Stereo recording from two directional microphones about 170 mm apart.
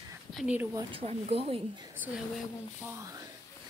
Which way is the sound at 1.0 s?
35° right (ahead or behind).